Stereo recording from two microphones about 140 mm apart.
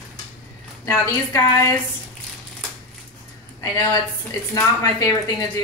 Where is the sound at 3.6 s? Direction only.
30° left (ahead or behind).